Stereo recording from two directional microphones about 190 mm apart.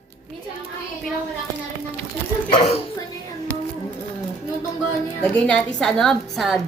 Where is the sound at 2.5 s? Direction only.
30° left (ahead or behind).